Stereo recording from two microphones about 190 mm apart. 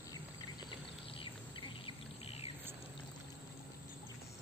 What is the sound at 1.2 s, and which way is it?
Insect, 30° left (ahead or behind).